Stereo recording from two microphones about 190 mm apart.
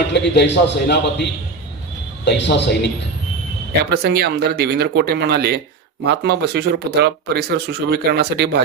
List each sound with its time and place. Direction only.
0.1 s a man's voice: 65° left (ahead or behind)
3.8 s speech: 60° right (ahead or behind)